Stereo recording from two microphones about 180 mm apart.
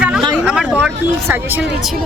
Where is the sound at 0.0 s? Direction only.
5° right (ahead or behind).